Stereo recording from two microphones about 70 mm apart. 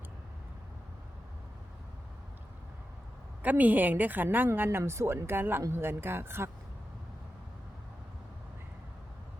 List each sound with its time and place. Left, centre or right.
3.4 s a woman's voice: right